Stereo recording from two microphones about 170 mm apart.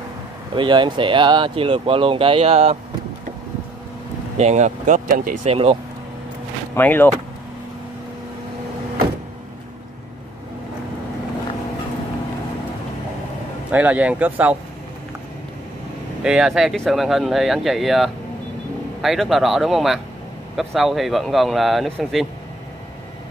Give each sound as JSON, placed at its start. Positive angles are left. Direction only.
{"t": 0.6, "sound": "speech", "side_deg": -30}
{"t": 4.4, "sound": "speech", "side_deg": -45}
{"t": 5.5, "sound": "speech", "side_deg": -35}
{"t": 6.7, "sound": "speech", "side_deg": 10}
{"t": 13.7, "sound": "speech", "side_deg": -10}
{"t": 16.2, "sound": "speech", "side_deg": -5}